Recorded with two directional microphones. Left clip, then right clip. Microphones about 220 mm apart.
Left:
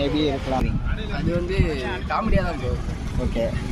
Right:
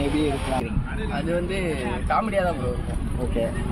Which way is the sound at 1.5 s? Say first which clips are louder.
Left 1 dB; centre (ahead or behind).